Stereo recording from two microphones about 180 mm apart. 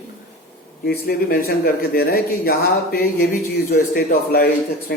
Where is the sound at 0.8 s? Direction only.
60° left (ahead or behind).